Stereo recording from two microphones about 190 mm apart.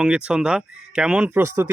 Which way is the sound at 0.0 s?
5° right (ahead or behind).